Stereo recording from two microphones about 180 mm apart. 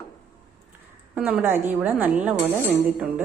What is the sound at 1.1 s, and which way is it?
Speech, 10° right (ahead or behind).